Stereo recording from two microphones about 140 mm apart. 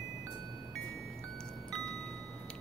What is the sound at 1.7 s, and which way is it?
Chime, 5° left (ahead or behind).